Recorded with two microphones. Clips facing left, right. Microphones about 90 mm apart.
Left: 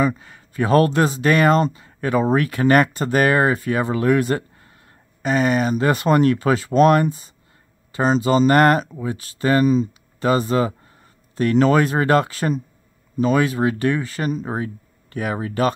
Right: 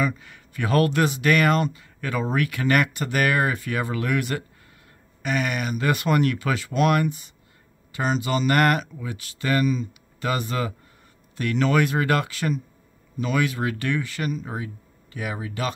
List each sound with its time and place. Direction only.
0.0 s speech: 30° left (ahead or behind); by 15.7 s 45° left (ahead or behind)